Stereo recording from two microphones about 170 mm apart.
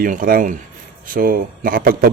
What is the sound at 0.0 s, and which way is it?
A man's voice, 55° right (ahead or behind).